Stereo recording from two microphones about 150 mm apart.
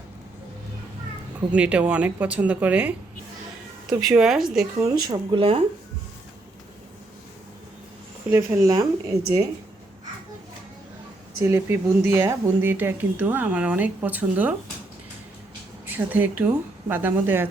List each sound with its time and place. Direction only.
1.5 s a woman's voice: 5° right (ahead or behind)
4.8 s speech: 25° right (ahead or behind)
8.3 s speech: 15° right (ahead or behind)
9.2 s speech: 90° right
11.4 s speech: 15° right (ahead or behind)
15.9 s speech: 10° right (ahead or behind)